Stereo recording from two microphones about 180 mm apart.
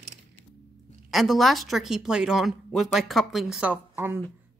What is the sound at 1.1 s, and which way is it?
Speech, centre (ahead or behind).